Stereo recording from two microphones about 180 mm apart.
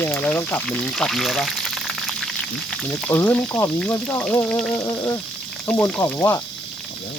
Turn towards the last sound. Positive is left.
turn(degrees=15)  # may be behind; listen again after turning